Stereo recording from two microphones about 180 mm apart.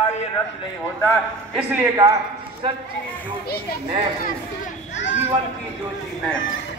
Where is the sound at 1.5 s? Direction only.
10° right (ahead or behind).